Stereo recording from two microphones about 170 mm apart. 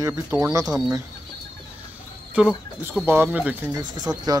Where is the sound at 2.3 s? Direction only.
5° right (ahead or behind).